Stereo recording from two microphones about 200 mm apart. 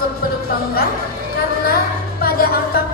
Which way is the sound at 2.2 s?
50° left (ahead or behind).